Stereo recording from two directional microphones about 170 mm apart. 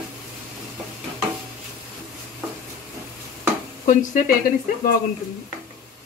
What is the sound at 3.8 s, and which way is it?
Speech, 50° left (ahead or behind).